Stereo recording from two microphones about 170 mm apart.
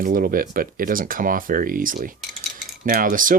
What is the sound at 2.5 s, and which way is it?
Cutlery, 55° right (ahead or behind).